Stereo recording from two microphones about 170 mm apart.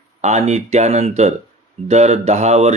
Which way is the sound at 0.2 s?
40° right (ahead or behind).